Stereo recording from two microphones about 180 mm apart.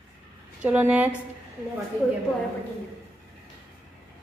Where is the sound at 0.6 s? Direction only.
5° right (ahead or behind).